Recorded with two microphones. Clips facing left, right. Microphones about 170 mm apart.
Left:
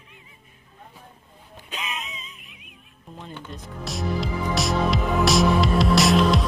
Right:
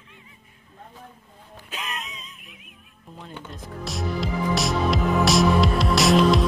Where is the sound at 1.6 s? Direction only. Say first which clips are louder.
Left 1 dB; centre (ahead or behind).